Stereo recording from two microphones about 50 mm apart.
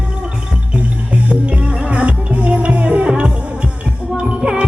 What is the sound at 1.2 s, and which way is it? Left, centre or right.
Music, right.